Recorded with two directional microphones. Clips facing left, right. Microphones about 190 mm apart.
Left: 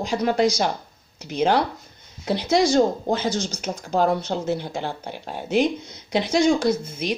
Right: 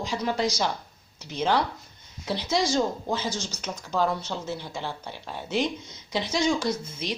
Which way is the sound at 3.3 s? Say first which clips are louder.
Left 7 dB; 15° left (ahead or behind).